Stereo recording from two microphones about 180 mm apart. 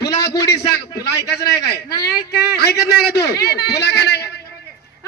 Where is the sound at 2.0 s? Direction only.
65° left (ahead or behind).